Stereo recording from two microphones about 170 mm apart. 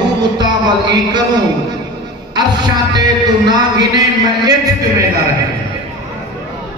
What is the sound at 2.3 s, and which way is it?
A man's voice, 25° right (ahead or behind).